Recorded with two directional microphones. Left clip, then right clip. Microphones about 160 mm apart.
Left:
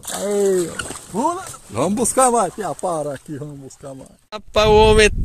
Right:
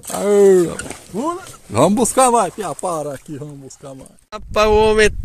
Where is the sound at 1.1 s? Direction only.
10° right (ahead or behind).